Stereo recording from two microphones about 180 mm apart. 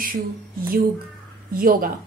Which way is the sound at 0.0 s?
55° right (ahead or behind).